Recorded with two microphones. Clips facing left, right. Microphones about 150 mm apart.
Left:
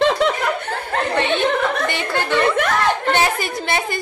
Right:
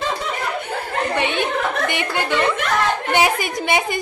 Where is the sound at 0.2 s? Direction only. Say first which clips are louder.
Left 9 dB; 80° left.